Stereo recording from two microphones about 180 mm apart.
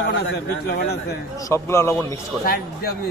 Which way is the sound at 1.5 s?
15° left (ahead or behind).